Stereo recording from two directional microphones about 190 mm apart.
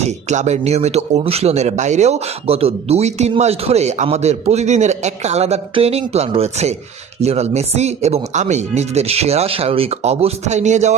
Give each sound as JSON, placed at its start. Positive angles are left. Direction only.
{"t": 0.0, "sound": "speech", "side_deg": -35}